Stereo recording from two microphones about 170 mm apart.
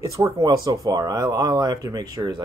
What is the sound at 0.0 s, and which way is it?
Speech, 20° right (ahead or behind).